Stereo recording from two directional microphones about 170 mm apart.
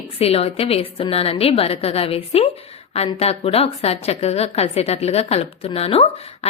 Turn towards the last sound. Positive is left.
turn(degrees=35)  # may be behind; listen again after turning